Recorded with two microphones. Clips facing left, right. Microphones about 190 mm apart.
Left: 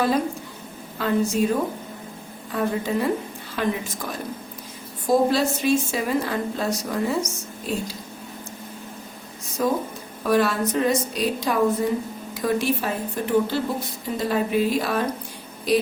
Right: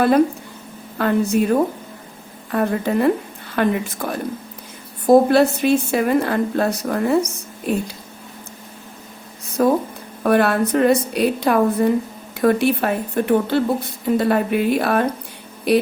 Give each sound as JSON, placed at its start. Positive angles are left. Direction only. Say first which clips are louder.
{"t": 0.9, "sound": "a woman's voice", "louder": "right 4 dB", "side_deg": -60}
{"t": 2.5, "sound": "a woman's voice", "louder": "right 4 dB", "side_deg": -60}
{"t": 9.6, "sound": "a woman's voice", "louder": "right 6 dB", "side_deg": -55}